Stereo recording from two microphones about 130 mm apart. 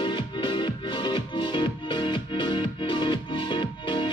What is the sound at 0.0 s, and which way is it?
Music, 40° left (ahead or behind).